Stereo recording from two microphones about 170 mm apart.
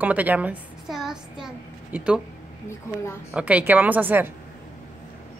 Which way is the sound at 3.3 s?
10° right (ahead or behind).